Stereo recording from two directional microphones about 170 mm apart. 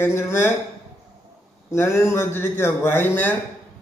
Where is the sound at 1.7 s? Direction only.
15° left (ahead or behind).